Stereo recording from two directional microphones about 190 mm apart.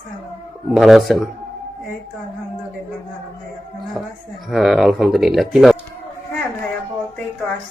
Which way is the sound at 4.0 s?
5° right (ahead or behind).